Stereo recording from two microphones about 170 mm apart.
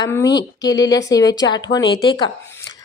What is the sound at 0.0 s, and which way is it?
A child's voice, 15° left (ahead or behind).